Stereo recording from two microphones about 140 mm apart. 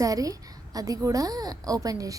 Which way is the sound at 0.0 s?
25° right (ahead or behind).